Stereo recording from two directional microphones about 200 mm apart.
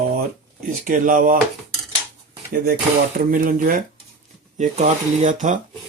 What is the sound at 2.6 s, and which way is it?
Speech, 45° right (ahead or behind).